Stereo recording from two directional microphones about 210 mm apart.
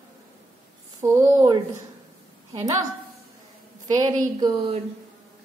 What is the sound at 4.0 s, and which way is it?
Speech, 20° right (ahead or behind).